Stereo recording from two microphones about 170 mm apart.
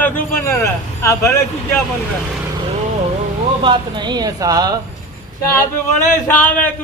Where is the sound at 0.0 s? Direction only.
15° left (ahead or behind).